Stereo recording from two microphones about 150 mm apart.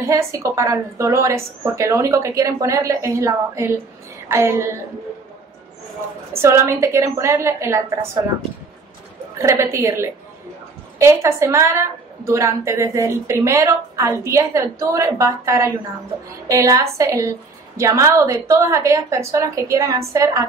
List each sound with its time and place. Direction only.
0.0 s a woman's voice: 20° right (ahead or behind)
6.3 s a woman's voice: 15° right (ahead or behind)
9.4 s a woman's voice: 20° right (ahead or behind)